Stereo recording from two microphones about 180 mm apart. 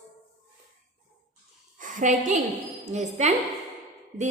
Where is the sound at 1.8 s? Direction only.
45° right (ahead or behind).